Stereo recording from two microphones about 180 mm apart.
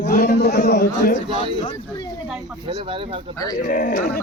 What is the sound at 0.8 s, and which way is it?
Speech, 45° left (ahead or behind).